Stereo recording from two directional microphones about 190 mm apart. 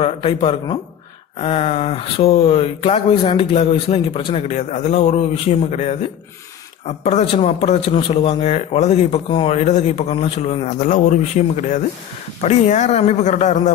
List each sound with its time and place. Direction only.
0.0 s speech: 30° left (ahead or behind)
7.0 s speech: 35° left (ahead or behind)